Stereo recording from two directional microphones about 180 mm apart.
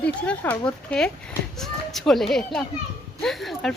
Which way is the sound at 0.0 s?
5° left (ahead or behind).